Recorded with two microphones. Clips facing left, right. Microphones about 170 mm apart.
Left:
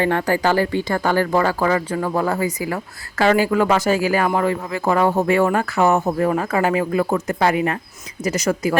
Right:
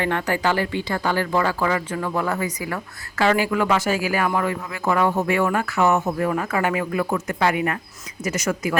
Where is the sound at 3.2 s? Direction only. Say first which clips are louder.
Left 4 dB; 40° left (ahead or behind).